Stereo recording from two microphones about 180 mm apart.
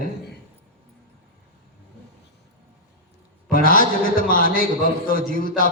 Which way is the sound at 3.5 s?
50° left (ahead or behind).